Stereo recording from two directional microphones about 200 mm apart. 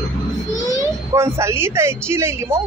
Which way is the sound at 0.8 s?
15° right (ahead or behind).